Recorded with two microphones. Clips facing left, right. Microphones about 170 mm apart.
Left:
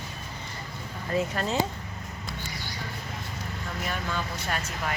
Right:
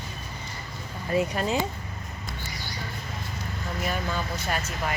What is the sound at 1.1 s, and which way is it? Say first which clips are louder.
Speech: right 2 dB; 15° right (ahead or behind).